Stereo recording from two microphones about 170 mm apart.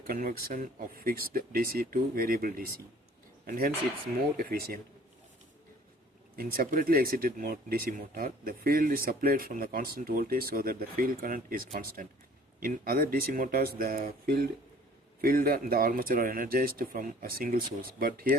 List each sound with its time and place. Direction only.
0.1 s speech: 55° right (ahead or behind)
6.3 s speech: 60° right (ahead or behind)